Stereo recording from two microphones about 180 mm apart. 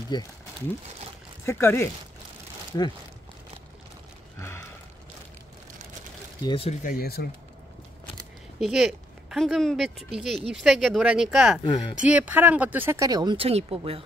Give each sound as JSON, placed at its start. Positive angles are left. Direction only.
{"t": 0.1, "sound": "speech", "side_deg": 25}
{"t": 1.4, "sound": "speech", "side_deg": 15}
{"t": 4.4, "sound": "a sound", "side_deg": 15}
{"t": 6.4, "sound": "speech", "side_deg": 30}
{"t": 6.8, "sound": "speech", "side_deg": 55}
{"t": 8.5, "sound": "speech", "side_deg": -5}
{"t": 11.6, "sound": "speech", "side_deg": 25}
{"t": 12.0, "sound": "speech", "side_deg": -10}